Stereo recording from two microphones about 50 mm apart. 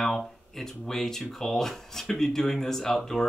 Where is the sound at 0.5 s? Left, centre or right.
Centre.